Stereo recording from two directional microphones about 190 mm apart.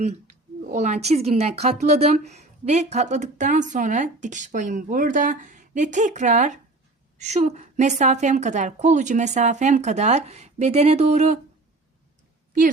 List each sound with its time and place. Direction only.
0.0 s speech: 40° right (ahead or behind)